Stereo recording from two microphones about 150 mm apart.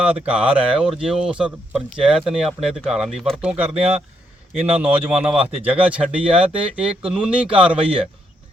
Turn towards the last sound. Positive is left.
turn(degrees=-10)  # may be behind; listen again after turning